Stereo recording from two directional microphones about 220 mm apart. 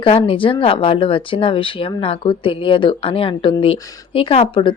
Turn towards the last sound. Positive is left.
turn(degrees=25)  # may be behind; listen again after turning